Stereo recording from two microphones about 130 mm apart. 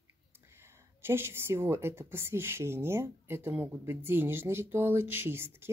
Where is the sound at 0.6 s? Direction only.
20° right (ahead or behind).